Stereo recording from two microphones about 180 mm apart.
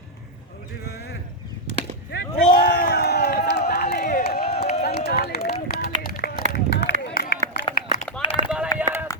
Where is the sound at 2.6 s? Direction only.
60° left (ahead or behind).